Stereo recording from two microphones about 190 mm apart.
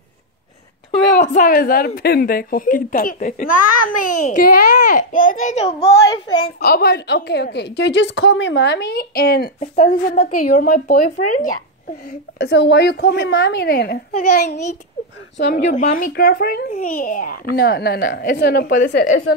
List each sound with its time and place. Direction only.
1.2 s a child's voice: 45° left (ahead or behind)
6.6 s a woman's voice: 55° left (ahead or behind)
9.6 s a child's voice: 40° left (ahead or behind)
12.4 s a woman's voice: 65° left (ahead or behind)
15.6 s a child's voice: 40° left (ahead or behind)